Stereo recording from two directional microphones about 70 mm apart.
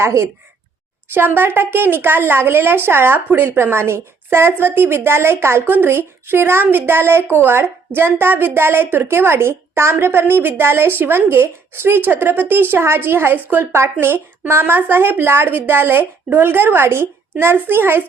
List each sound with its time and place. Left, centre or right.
0.0 s a woman's voice: right
1.1 s a woman's voice: right